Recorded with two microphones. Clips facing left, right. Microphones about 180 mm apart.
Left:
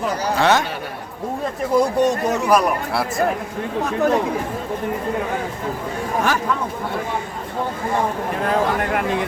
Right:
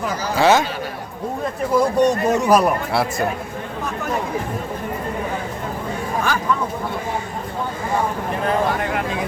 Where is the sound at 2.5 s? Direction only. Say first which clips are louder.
Even; centre (ahead or behind).